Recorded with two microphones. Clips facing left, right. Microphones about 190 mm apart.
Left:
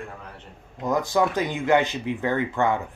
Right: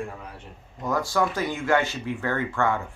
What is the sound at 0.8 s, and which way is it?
Speech, 20° left (ahead or behind).